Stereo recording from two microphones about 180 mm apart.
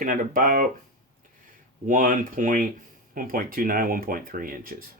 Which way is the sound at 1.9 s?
50° right (ahead or behind).